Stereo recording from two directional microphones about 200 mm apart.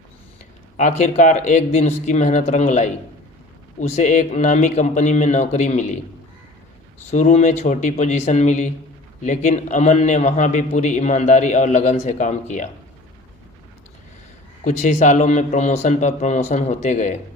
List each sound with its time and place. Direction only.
0.8 s a man's voice: 40° left (ahead or behind)
7.1 s a man's voice: 35° left (ahead or behind)
14.6 s a man's voice: 40° left (ahead or behind)